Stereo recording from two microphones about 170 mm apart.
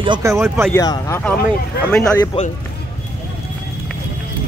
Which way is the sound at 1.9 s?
5° left (ahead or behind).